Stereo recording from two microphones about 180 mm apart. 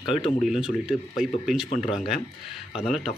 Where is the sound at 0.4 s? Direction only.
5° right (ahead or behind).